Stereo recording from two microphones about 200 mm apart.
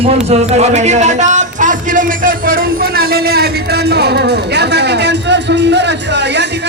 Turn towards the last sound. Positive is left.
turn(degrees=-60)  # may be behind; listen again after turning